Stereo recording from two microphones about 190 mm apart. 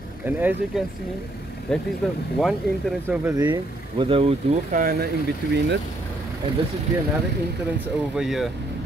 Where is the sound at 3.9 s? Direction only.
30° right (ahead or behind).